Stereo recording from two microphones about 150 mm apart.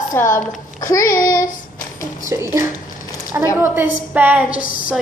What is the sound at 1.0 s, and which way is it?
Speech, 65° left (ahead or behind).